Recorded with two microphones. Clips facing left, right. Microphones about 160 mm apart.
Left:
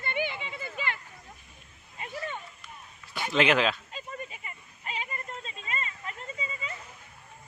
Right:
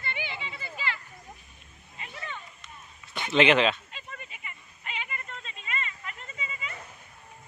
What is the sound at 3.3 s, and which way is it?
Speech, centre (ahead or behind).